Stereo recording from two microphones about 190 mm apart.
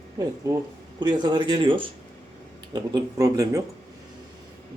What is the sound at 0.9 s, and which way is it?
Speech, 20° right (ahead or behind).